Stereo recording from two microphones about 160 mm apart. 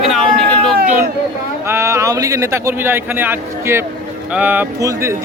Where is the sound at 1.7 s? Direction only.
15° right (ahead or behind).